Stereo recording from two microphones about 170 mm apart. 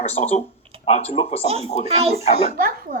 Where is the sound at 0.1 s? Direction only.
40° left (ahead or behind).